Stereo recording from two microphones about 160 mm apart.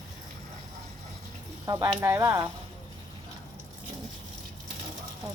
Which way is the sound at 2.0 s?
15° right (ahead or behind).